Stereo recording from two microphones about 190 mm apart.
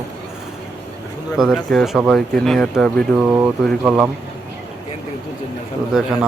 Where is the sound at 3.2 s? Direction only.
5° right (ahead or behind).